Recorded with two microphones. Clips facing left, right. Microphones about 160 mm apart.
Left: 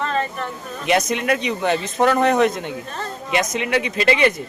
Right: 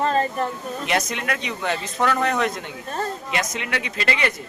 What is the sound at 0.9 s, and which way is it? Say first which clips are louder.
Speech: left 7 dB; 20° left (ahead or behind).